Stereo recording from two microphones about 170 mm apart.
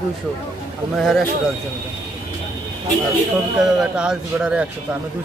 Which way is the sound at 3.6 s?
5° right (ahead or behind).